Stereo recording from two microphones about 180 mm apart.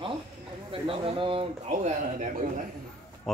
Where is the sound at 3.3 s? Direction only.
Centre (ahead or behind).